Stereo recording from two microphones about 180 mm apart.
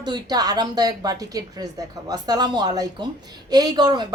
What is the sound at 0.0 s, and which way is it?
A woman's voice, 25° right (ahead or behind).